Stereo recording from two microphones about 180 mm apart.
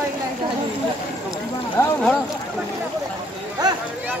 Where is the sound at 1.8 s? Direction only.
15° left (ahead or behind).